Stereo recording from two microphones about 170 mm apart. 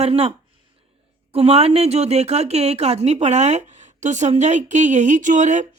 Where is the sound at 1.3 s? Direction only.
35° right (ahead or behind).